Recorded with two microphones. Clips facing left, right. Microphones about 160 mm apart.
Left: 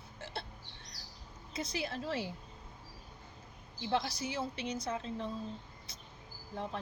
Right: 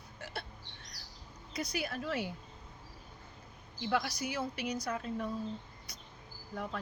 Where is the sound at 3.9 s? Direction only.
30° left (ahead or behind).